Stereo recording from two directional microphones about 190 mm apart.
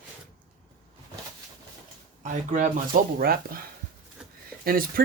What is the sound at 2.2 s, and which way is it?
Speech, 40° right (ahead or behind).